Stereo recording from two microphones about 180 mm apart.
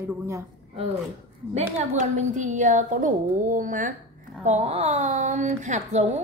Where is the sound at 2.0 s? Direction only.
40° right (ahead or behind).